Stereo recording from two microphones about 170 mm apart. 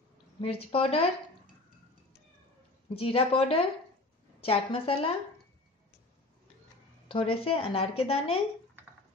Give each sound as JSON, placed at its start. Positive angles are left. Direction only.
{"t": 0.4, "sound": "a woman's voice", "side_deg": 35}
{"t": 2.9, "sound": "a woman's voice", "side_deg": 35}
{"t": 7.1, "sound": "a woman's voice", "side_deg": 30}